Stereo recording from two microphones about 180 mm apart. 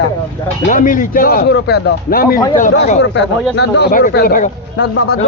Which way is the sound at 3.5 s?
70° left (ahead or behind).